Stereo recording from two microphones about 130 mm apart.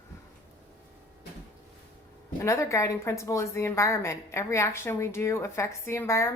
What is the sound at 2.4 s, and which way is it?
A woman's voice, 20° left (ahead or behind).